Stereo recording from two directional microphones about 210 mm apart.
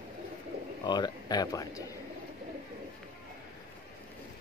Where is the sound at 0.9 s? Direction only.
20° left (ahead or behind).